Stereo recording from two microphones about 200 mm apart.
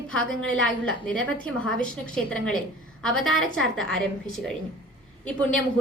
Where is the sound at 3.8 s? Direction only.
Centre (ahead or behind).